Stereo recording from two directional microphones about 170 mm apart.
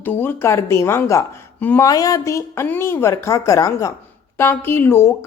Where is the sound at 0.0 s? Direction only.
10° left (ahead or behind).